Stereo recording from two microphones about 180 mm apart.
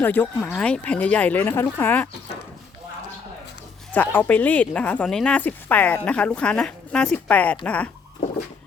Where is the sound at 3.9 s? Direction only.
10° left (ahead or behind).